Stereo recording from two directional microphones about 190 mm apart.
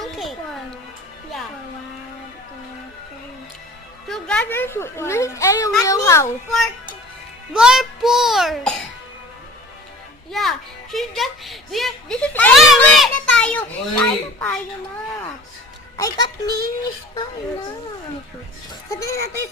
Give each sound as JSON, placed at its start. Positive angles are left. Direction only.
{"t": 0.0, "sound": "a sound", "side_deg": 0}
{"t": 4.1, "sound": "speech", "side_deg": 5}
{"t": 7.5, "sound": "speech", "side_deg": -5}
{"t": 10.3, "sound": "speech", "side_deg": 0}
{"t": 16.0, "sound": "speech", "side_deg": 20}
{"t": 18.9, "sound": "speech", "side_deg": 15}